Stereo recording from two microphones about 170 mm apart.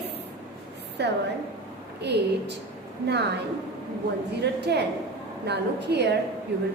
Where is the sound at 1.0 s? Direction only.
85° right.